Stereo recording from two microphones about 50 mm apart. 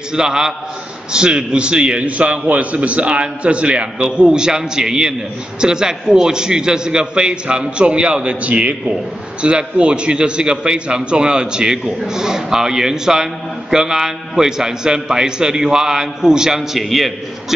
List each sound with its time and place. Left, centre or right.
0.1 s a man's voice: centre